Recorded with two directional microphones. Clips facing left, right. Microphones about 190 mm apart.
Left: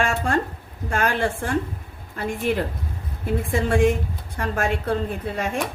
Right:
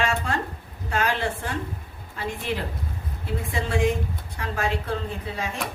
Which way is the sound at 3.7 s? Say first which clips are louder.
Left 4 dB; 50° left (ahead or behind).